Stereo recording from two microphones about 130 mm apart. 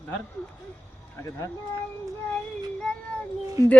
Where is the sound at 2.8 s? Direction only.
5° left (ahead or behind).